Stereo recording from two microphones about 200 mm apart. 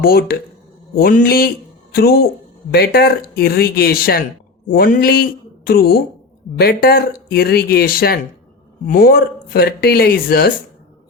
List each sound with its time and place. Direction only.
0.0 s speech: 50° left (ahead or behind)